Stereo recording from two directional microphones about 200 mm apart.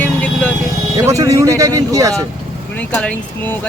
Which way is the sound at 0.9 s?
15° right (ahead or behind).